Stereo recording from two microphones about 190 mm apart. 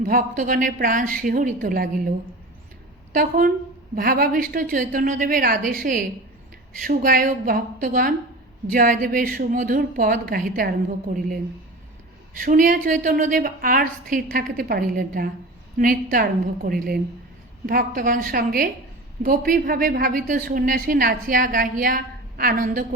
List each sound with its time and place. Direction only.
0.0 s a woman's voice: 50° right (ahead or behind)
3.1 s a woman's voice: 50° right (ahead or behind)
12.4 s a woman's voice: 45° right (ahead or behind)